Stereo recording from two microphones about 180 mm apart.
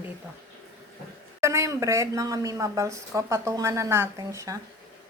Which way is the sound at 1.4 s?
15° right (ahead or behind).